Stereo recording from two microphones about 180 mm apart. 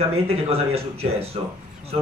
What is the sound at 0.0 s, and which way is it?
Speech, 35° right (ahead or behind).